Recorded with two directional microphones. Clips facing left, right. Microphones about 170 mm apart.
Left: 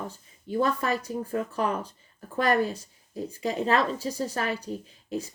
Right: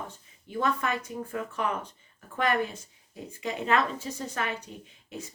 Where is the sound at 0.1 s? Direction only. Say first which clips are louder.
Left 6 dB; 35° left (ahead or behind).